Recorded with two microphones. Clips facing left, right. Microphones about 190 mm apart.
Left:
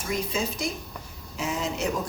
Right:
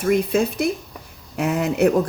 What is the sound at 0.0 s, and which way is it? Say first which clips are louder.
Speech: right 10 dB; 60° right (ahead or behind).